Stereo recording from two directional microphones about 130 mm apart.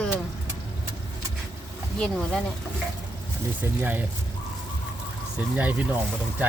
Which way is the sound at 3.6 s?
15° right (ahead or behind).